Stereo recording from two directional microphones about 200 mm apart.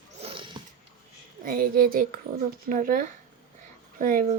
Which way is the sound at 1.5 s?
45° right (ahead or behind).